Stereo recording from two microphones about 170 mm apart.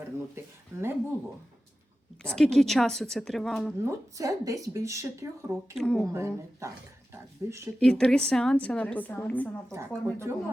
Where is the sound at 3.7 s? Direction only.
20° right (ahead or behind).